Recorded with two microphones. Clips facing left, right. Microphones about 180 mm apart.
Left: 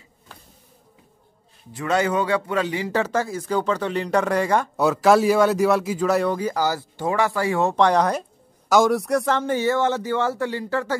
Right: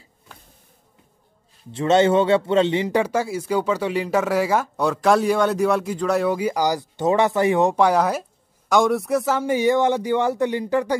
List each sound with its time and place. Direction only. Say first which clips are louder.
1.7 s a man's voice: right 5 dB; 25° right (ahead or behind); by 6.3 s centre (ahead or behind)
6.3 s speech: right 2 dB; 10° right (ahead or behind)